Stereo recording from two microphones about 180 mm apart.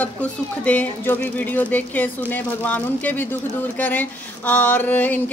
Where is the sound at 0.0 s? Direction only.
10° left (ahead or behind).